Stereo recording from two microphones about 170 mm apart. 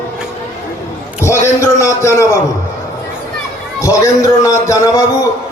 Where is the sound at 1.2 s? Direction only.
15° left (ahead or behind).